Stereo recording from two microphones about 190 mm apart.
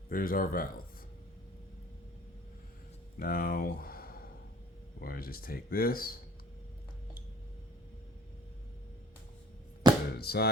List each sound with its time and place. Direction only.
0.1 s speech: 50° left (ahead or behind)
3.2 s speech: 50° left (ahead or behind)
10.2 s speech: 55° left (ahead or behind)